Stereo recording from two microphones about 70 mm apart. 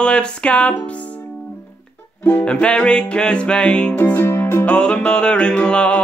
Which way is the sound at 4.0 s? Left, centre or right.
Left.